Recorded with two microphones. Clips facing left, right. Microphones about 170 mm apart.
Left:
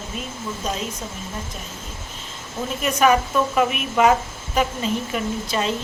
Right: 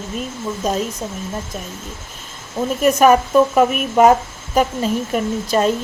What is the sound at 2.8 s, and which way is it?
A woman's voice, 45° right (ahead or behind).